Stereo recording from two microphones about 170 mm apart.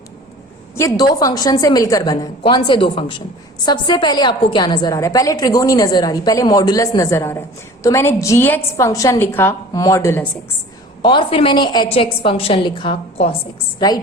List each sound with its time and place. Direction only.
0.8 s a woman's voice: 20° left (ahead or behind)
11.0 s a woman's voice: 30° left (ahead or behind)
13.7 s a woman's voice: 25° left (ahead or behind)